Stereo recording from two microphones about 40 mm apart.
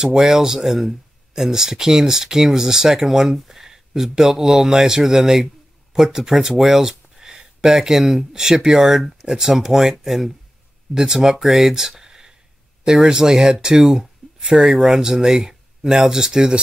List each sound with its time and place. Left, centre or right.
0.0 s speech: centre